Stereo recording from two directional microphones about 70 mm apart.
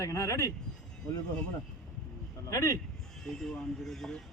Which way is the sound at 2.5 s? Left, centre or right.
Left.